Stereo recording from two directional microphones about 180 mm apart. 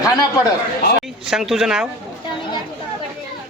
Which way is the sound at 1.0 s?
5° right (ahead or behind).